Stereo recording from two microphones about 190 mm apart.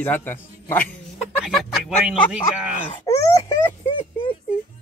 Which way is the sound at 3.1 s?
20° left (ahead or behind).